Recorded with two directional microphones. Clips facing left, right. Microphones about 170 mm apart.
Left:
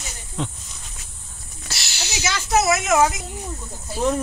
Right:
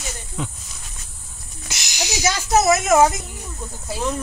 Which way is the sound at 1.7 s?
15° right (ahead or behind).